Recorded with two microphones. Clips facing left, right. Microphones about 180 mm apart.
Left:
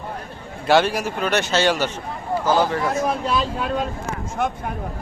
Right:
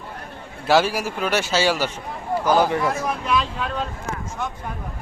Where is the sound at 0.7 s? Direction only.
5° right (ahead or behind).